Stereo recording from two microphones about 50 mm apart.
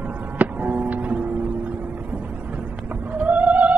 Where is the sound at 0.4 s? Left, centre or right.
Right.